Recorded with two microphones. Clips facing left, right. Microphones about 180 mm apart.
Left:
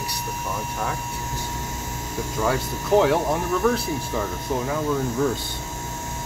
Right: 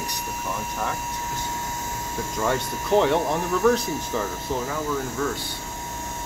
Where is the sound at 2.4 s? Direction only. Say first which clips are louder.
Left 1 dB; 5° left (ahead or behind).